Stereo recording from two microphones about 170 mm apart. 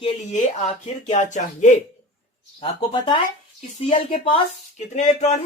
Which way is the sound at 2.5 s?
30° left (ahead or behind).